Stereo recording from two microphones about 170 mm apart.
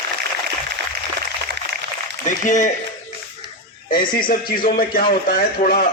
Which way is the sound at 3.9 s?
60° left (ahead or behind).